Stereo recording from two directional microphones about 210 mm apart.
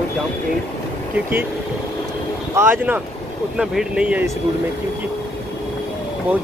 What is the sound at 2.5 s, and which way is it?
Speech, 10° right (ahead or behind).